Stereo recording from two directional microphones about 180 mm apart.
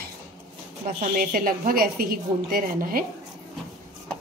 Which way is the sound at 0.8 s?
50° right (ahead or behind).